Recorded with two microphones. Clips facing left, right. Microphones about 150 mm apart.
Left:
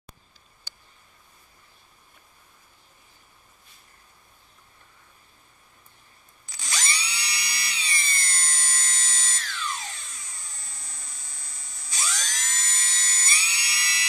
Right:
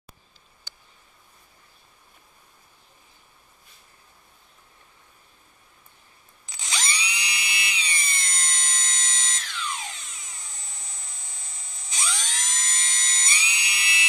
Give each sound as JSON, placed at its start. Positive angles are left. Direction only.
{"t": 6.5, "sound": "drill", "side_deg": -20}
{"t": 11.9, "sound": "dental drill", "side_deg": -20}